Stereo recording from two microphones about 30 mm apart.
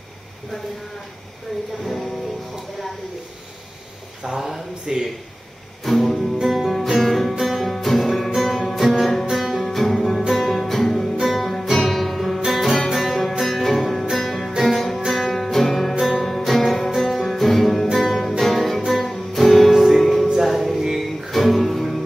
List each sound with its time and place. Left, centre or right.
4.2 s speech: centre
5.9 s music: centre
6.4 s music: centre
8.8 s music: centre
9.7 s music: centre
11.2 s music: centre
19.7 s music: centre
20.0 s music: centre
20.7 s music: centre
21.3 s music: centre